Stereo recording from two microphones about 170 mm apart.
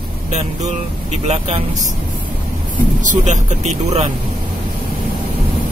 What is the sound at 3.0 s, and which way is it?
Speech, 45° right (ahead or behind).